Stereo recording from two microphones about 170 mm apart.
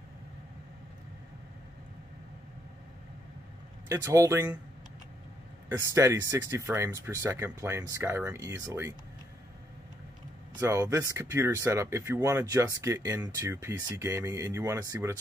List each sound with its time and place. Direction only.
3.9 s speech: 20° right (ahead or behind)
5.8 s speech: 15° right (ahead or behind)
10.6 s speech: 15° right (ahead or behind)